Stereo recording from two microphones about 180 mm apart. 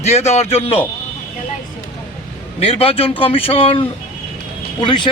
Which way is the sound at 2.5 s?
30° left (ahead or behind).